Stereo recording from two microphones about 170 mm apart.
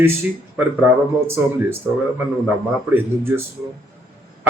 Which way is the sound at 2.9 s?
15° right (ahead or behind).